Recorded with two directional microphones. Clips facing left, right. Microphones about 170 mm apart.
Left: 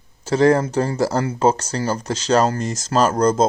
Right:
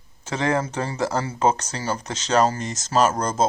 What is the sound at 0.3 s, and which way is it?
Speech, 35° left (ahead or behind).